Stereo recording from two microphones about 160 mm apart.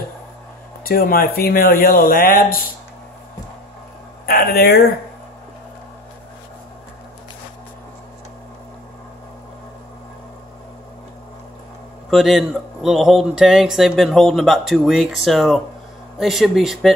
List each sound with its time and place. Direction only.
0.8 s speech: 65° left (ahead or behind)
4.3 s speech: 70° left (ahead or behind)
12.1 s speech: centre (ahead or behind)